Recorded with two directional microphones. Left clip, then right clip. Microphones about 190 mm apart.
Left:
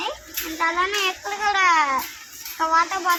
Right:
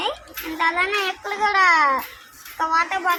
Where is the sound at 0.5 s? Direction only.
30° right (ahead or behind).